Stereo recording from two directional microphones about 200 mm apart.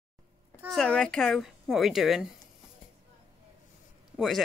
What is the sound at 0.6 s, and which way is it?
Speech, centre (ahead or behind).